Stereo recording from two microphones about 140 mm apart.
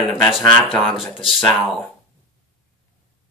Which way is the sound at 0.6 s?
5° left (ahead or behind).